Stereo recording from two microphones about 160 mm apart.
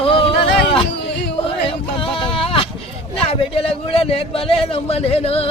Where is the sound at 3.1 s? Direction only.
35° left (ahead or behind).